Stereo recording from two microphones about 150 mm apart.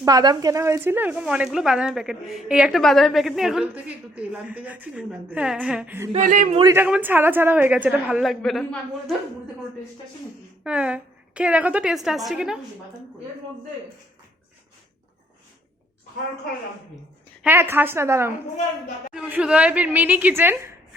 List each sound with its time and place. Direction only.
0.0 s speech: 25° right (ahead or behind)
6.1 s speech: 55° right (ahead or behind)
6.7 s speech: 10° right (ahead or behind)
10.6 s a woman's voice: 5° right (ahead or behind)
17.4 s speech: 15° right (ahead or behind)
19.1 s speech: 5° right (ahead or behind)